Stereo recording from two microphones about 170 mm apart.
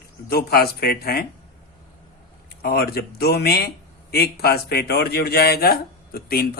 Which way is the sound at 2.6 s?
65° left (ahead or behind).